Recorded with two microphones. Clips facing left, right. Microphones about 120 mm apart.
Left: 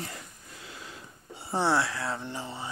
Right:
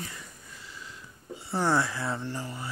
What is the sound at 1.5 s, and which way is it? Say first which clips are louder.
Speech: even; 5° left (ahead or behind).